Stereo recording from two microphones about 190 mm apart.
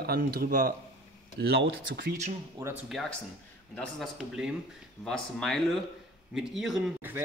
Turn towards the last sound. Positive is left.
turn(degrees=-5)  # may be behind; listen again after turning